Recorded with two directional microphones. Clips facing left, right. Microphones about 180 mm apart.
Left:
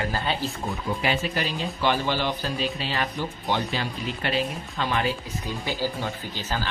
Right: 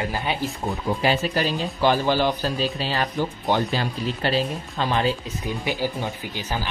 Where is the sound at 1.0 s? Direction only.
35° right (ahead or behind).